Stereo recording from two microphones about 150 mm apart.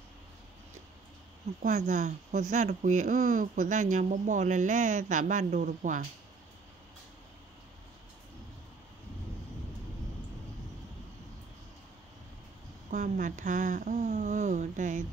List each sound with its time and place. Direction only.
1.6 s speech: 55° right (ahead or behind)
12.9 s speech: 60° right (ahead or behind)